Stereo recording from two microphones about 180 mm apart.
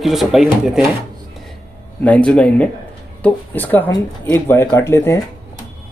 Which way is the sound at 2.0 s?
5° left (ahead or behind).